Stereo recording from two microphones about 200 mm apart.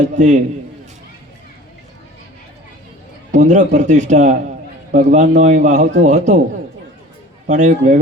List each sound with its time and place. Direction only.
0.0 s a man's voice: 35° right (ahead or behind)
3.3 s a man's voice: 35° right (ahead or behind)
7.4 s a man's voice: 35° right (ahead or behind)